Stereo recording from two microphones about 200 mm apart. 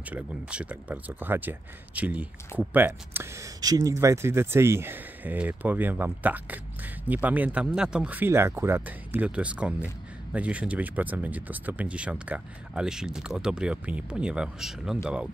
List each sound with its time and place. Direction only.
0.1 s speech: 5° right (ahead or behind)